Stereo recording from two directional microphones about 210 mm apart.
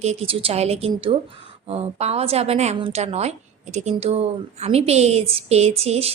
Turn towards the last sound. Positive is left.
turn(degrees=-30)  # may be behind; listen again after turning